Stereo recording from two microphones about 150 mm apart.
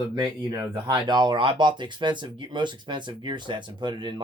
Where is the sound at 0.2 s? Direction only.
30° right (ahead or behind).